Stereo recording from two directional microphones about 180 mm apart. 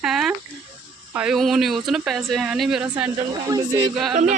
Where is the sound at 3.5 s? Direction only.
20° right (ahead or behind).